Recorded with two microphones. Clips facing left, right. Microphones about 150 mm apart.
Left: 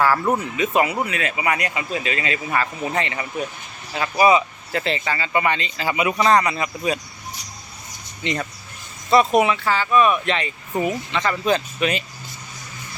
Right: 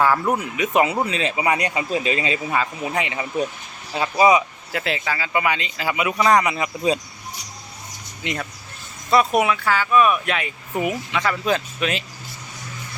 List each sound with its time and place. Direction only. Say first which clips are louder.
0.0 s speech: even; centre (ahead or behind)
0.3 s speech: even; 10° right (ahead or behind); by 2.3 s 30° right (ahead or behind)
2.5 s speech: even; 10° right (ahead or behind)
4.7 s speech: left 1 dB; 5° right (ahead or behind)
6.4 s speech: right 2 dB; 15° right (ahead or behind)
8.2 s speech: left 3 dB; 5° right (ahead or behind)